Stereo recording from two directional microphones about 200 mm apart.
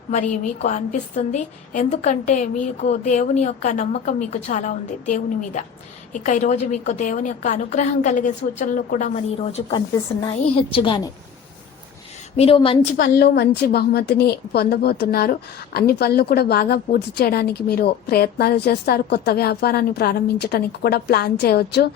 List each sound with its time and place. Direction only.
0.1 s a woman's voice: 35° left (ahead or behind)
12.4 s a woman's voice: 25° left (ahead or behind)
13.0 s a woman's voice: 50° left (ahead or behind)